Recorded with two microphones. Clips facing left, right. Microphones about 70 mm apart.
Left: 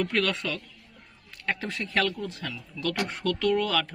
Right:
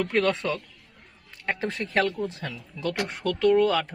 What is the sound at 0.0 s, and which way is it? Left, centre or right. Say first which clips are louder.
Speech: right 3 dB; right.